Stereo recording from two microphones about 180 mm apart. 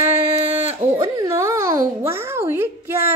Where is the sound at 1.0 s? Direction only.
15° right (ahead or behind).